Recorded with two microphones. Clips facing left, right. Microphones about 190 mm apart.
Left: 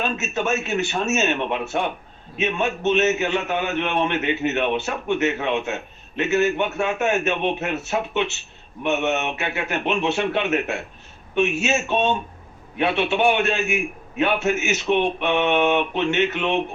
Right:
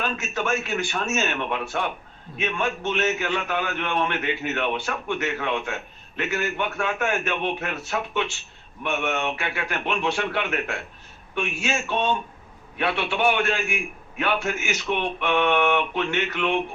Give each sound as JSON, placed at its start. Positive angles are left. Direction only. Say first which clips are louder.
{"t": 0.0, "sound": "a man's voice", "louder": "left 3 dB", "side_deg": 25}